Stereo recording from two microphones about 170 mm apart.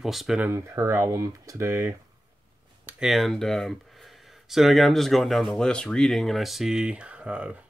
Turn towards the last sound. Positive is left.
turn(degrees=-5)  # may be behind; listen again after turning